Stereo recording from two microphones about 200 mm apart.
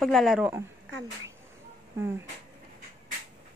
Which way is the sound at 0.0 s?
Centre (ahead or behind).